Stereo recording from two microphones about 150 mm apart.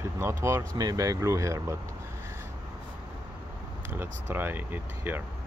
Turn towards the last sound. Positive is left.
turn(degrees=-15)  # may be behind; listen again after turning